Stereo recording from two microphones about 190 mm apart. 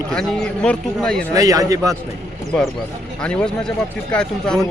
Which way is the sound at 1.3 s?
20° right (ahead or behind).